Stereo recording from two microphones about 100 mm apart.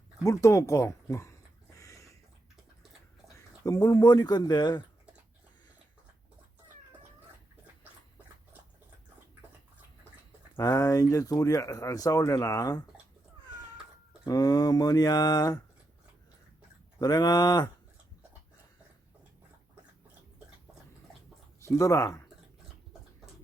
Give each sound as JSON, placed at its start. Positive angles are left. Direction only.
{"t": 0.2, "sound": "a sound", "side_deg": 30}
{"t": 3.6, "sound": "speech", "side_deg": 40}
{"t": 10.6, "sound": "speech", "side_deg": 35}
{"t": 14.3, "sound": "speech", "side_deg": 35}
{"t": 17.0, "sound": "speech", "side_deg": 40}
{"t": 21.6, "sound": "speech", "side_deg": 30}